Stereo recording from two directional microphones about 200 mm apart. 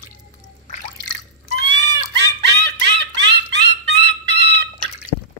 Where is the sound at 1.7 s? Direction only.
60° right (ahead or behind).